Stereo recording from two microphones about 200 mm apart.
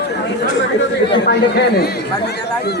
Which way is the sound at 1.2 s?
50° left (ahead or behind).